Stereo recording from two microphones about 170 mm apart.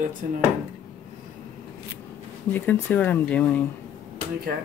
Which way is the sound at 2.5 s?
10° left (ahead or behind).